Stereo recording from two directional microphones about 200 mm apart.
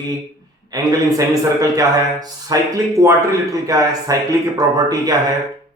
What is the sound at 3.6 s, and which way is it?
A man's voice, 15° right (ahead or behind).